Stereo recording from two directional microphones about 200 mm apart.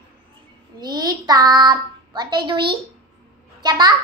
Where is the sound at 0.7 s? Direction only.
20° right (ahead or behind).